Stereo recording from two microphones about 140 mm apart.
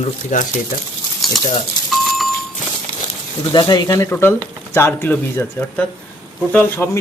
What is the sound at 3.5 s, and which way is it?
Speech, 30° left (ahead or behind).